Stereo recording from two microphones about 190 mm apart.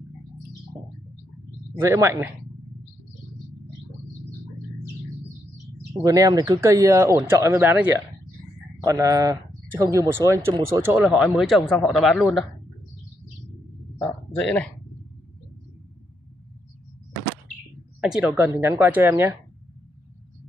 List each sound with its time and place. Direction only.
1.8 s speech: 15° right (ahead or behind)
6.0 s speech: 20° right (ahead or behind)
8.8 s speech: 15° right (ahead or behind); by 12.4 s centre (ahead or behind)
13.9 s a sound: 5° left (ahead or behind)
18.0 s speech: 5° right (ahead or behind)